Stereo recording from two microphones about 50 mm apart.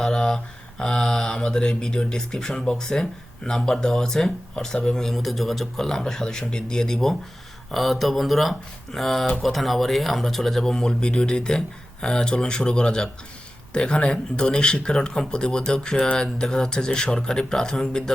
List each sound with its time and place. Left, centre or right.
0.0 s speech: centre